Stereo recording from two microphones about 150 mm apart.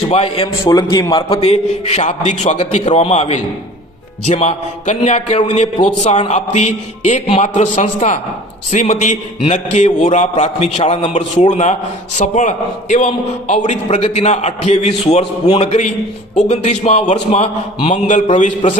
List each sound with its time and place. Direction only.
0.1 s a man's voice: 40° left (ahead or behind)
0.4 s a man's voice: 30° left (ahead or behind)
1.4 s a man's voice: 45° left (ahead or behind)
18.3 s a man's voice: 55° left (ahead or behind)